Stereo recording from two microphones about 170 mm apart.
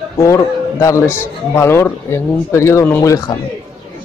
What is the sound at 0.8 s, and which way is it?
Speech, 15° left (ahead or behind).